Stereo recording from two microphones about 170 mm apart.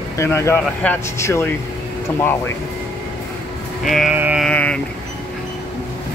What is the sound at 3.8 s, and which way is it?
Music, centre (ahead or behind).